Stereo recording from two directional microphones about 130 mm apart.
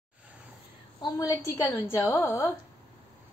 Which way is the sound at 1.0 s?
25° left (ahead or behind).